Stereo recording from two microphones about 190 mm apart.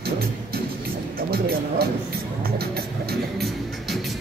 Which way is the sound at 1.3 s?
55° right (ahead or behind).